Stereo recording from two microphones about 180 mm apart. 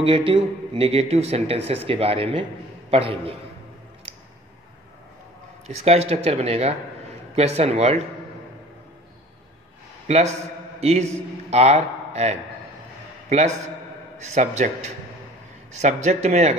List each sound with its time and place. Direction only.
0.0 s a man's voice: 30° right (ahead or behind)
5.9 s a man's voice: 35° right (ahead or behind)
10.0 s a man's voice: 40° right (ahead or behind)